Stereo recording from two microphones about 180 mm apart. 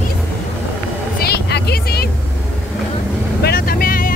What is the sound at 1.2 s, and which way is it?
Vehicle, 60° left (ahead or behind).